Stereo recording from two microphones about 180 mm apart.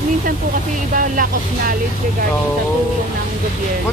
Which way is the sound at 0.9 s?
50° right (ahead or behind).